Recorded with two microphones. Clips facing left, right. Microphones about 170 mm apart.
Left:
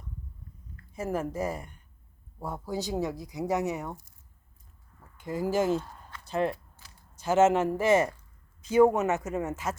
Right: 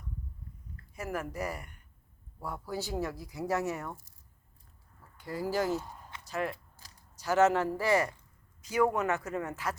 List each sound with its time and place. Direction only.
0.9 s speech: 25° left (ahead or behind)
5.1 s speech: 20° left (ahead or behind)
5.8 s a sound: 20° right (ahead or behind)
6.2 s speech: 25° left (ahead or behind)
6.8 s a sound: 35° right (ahead or behind)
7.2 s speech: 25° left (ahead or behind)